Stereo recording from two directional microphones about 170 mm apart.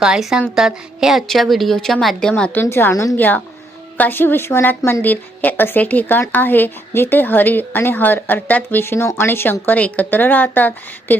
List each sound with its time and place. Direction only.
0.0 s a woman's voice: 5° right (ahead or behind)